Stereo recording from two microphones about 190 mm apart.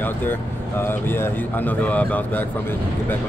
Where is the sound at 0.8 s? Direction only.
10° left (ahead or behind).